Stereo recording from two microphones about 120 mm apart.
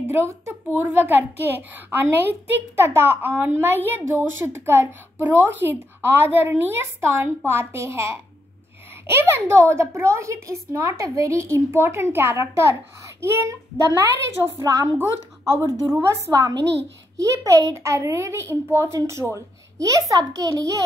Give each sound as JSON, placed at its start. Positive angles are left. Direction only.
{"t": 0.1, "sound": "a child's voice", "side_deg": -20}
{"t": 15.5, "sound": "a woman's voice", "side_deg": 25}
{"t": 16.1, "sound": "a child's voice", "side_deg": -30}